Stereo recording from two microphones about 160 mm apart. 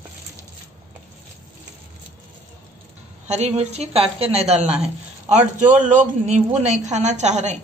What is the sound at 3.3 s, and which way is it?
A woman's voice, 40° right (ahead or behind).